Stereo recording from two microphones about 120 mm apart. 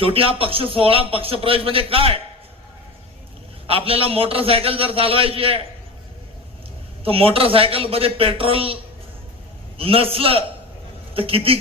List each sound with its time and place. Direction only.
0.0 s speech: 50° right (ahead or behind)
3.7 s speech: 50° right (ahead or behind)
7.0 s speech: 50° right (ahead or behind)